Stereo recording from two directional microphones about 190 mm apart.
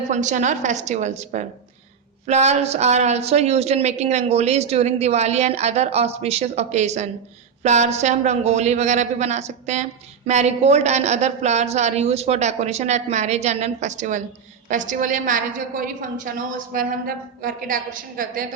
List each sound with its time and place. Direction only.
0.1 s a woman's voice: 40° right (ahead or behind)